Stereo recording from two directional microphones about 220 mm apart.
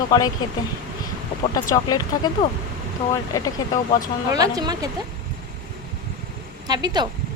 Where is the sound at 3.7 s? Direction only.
35° left (ahead or behind).